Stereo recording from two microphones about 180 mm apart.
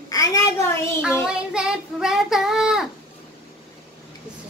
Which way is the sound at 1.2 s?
5° right (ahead or behind).